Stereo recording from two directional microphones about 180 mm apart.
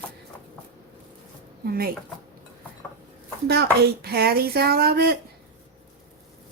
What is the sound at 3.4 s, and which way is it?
Speech, 65° right (ahead or behind).